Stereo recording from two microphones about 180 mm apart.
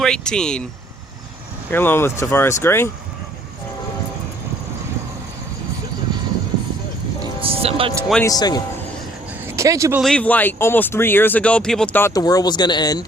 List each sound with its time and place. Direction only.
0.0 s speech: 5° left (ahead or behind)
1.7 s speech: 10° left (ahead or behind)
7.4 s speech: 35° right (ahead or behind)
8.2 s speech: 20° left (ahead or behind)
9.5 s speech: 15° right (ahead or behind)
10.0 s speech: 5° left (ahead or behind); by 13.1 s 20° left (ahead or behind)